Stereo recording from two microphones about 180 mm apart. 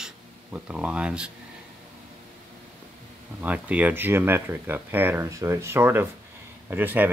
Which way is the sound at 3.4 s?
10° right (ahead or behind).